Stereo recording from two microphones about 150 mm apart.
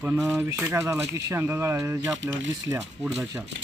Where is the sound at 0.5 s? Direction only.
15° right (ahead or behind).